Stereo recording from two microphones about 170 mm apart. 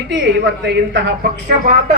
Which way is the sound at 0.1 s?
90° right.